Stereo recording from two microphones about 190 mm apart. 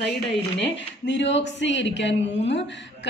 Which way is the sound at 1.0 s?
70° left (ahead or behind).